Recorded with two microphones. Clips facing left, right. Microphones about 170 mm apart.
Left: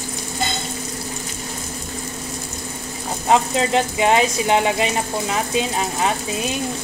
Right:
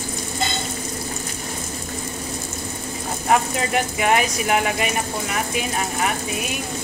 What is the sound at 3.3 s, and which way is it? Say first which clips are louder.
Speech: left 3 dB; 25° left (ahead or behind).